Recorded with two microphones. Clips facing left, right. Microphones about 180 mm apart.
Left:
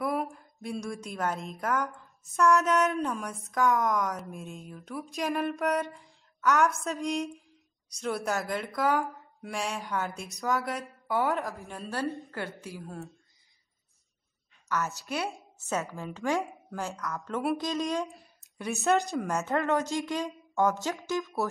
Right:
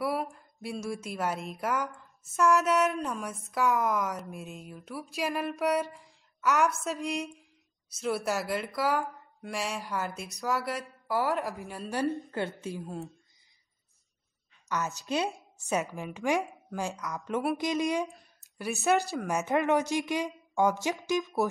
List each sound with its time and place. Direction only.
0.0 s a woman's voice: centre (ahead or behind)
12.3 s a woman's voice: 20° right (ahead or behind)
14.7 s a woman's voice: 20° right (ahead or behind)
18.0 s speech: centre (ahead or behind)
19.2 s a woman's voice: 15° right (ahead or behind)